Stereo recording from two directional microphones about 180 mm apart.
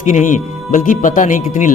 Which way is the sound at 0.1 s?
45° left (ahead or behind).